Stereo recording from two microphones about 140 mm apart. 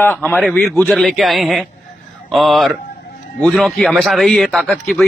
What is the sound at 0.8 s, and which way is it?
A man's voice, centre (ahead or behind).